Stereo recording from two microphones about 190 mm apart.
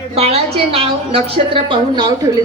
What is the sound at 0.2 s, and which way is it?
A woman's voice, 30° right (ahead or behind).